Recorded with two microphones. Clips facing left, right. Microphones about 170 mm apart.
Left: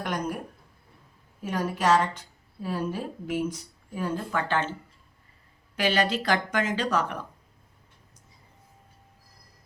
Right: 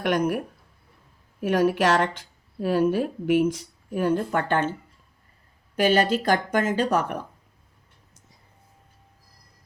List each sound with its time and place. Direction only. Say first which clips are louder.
0.0 s speech: right 7 dB; 75° right (ahead or behind)
4.3 s a woman's voice: right 4 dB; 50° right (ahead or behind)
5.7 s a woman's voice: right 5 dB; 50° right (ahead or behind)